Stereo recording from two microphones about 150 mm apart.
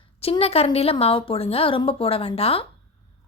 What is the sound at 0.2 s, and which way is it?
A woman's voice, 40° left (ahead or behind).